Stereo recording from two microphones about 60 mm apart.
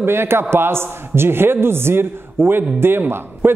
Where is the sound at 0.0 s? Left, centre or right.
Right.